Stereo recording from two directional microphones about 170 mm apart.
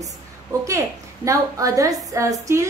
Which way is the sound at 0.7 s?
20° right (ahead or behind).